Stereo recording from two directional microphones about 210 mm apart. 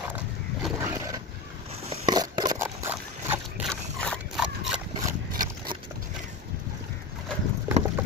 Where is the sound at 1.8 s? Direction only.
30° right (ahead or behind).